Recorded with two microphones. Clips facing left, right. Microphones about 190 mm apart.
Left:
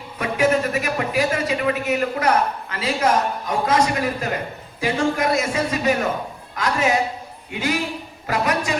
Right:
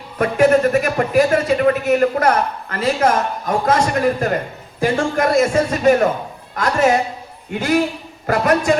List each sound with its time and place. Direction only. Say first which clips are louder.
0.2 s a man's voice: right 6 dB; 50° right (ahead or behind)